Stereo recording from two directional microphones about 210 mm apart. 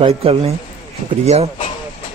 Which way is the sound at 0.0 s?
30° right (ahead or behind).